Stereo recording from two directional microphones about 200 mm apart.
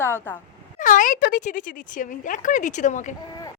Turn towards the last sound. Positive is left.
turn(degrees=40)  # may be behind; listen again after turning